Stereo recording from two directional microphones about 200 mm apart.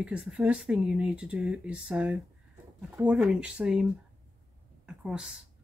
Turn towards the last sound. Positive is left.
turn(degrees=-5)  # may be behind; listen again after turning